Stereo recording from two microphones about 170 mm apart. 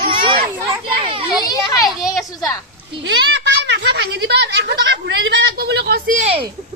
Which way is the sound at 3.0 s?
90° right.